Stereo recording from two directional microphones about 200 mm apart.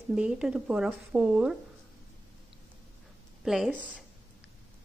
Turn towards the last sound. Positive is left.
turn(degrees=0)  # may be behind; listen again after turning